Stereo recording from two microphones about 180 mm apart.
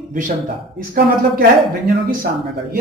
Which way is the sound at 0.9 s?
55° right (ahead or behind).